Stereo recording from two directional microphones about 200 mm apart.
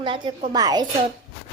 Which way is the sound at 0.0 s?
25° right (ahead or behind).